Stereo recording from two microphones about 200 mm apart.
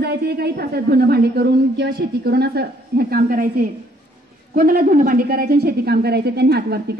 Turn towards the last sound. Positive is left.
turn(degrees=-55)  # may be behind; listen again after turning